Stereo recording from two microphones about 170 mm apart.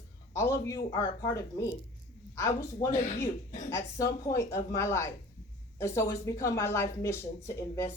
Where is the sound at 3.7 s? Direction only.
15° left (ahead or behind).